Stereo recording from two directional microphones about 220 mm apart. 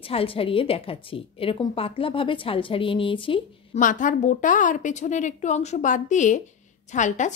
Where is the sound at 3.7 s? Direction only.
35° left (ahead or behind).